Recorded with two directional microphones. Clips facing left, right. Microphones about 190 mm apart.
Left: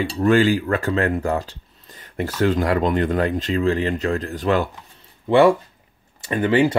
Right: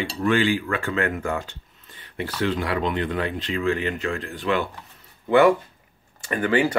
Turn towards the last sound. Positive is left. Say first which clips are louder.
# left 4 dB
turn(degrees=25)  # may be behind; listen again after turning